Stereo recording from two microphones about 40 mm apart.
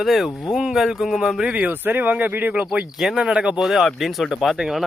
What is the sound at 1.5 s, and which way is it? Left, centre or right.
Speech, right.